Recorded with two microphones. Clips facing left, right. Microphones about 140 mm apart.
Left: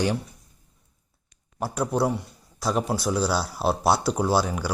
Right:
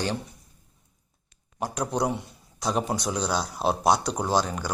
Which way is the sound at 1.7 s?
5° left (ahead or behind).